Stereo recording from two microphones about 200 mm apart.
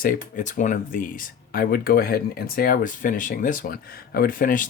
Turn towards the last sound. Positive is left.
turn(degrees=45)  # may be behind; listen again after turning